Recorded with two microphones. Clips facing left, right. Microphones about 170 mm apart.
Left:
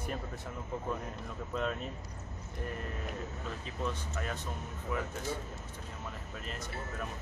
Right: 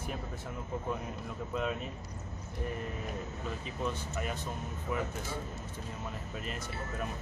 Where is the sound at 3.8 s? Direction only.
10° right (ahead or behind).